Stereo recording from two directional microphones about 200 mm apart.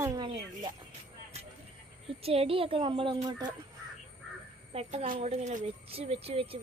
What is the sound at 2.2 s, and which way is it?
Speech, 30° right (ahead or behind).